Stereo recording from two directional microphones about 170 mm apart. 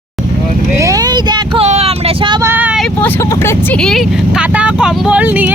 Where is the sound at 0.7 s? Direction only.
20° right (ahead or behind).